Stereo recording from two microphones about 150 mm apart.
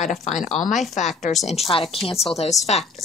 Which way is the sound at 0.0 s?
50° left (ahead or behind).